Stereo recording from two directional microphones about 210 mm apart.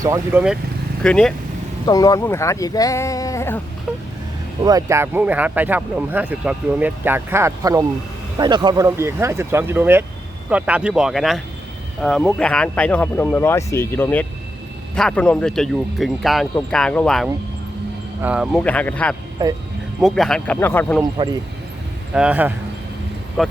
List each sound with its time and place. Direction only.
0.0 s speech: 15° right (ahead or behind)
1.0 s speech: 5° left (ahead or behind)
1.9 s speech: 15° left (ahead or behind)
3.9 s vehicle: 5° right (ahead or behind)
4.6 s speech: 15° right (ahead or behind); by 19.1 s 5° left (ahead or behind)
19.4 s speech: 15° right (ahead or behind)
20.0 s speech: centre (ahead or behind)
21.0 s speech: 20° right (ahead or behind)
22.1 s speech: 5° right (ahead or behind)